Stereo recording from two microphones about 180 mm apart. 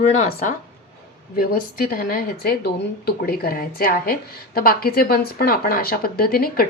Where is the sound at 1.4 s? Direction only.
55° left (ahead or behind).